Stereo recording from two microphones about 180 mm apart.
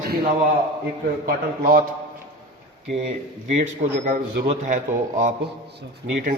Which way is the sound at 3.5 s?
45° right (ahead or behind).